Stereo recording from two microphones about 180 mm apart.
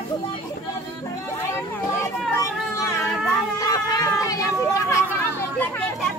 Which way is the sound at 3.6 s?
20° left (ahead or behind).